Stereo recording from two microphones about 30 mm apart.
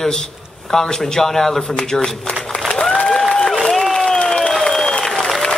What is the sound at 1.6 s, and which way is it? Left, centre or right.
Speech, left.